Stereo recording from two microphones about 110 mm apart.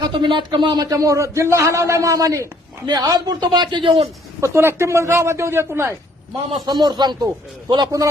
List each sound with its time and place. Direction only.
0.1 s a man's voice: 45° right (ahead or behind)
4.4 s speech: 25° right (ahead or behind)
6.7 s speech: 40° right (ahead or behind)